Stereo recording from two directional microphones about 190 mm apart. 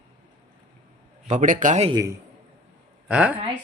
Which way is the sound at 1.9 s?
20° right (ahead or behind).